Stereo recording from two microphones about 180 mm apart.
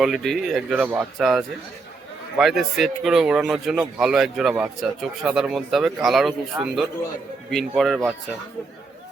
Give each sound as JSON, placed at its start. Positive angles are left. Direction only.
{"t": 0.0, "sound": "speech", "side_deg": 0}